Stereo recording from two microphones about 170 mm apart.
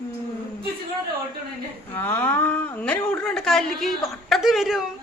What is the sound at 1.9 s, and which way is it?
Speech, 15° left (ahead or behind).